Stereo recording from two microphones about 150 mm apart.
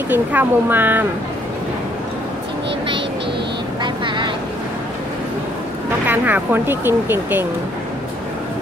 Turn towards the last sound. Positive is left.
turn(degrees=-15)  # may be behind; listen again after turning